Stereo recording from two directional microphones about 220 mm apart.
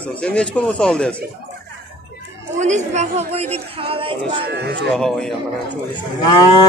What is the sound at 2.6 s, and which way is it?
A woman's voice, 30° right (ahead or behind).